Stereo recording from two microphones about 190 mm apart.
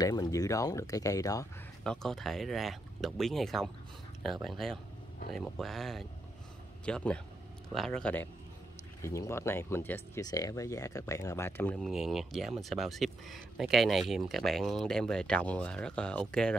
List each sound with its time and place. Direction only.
0.0 s speech: 20° left (ahead or behind)
1.9 s speech: centre (ahead or behind)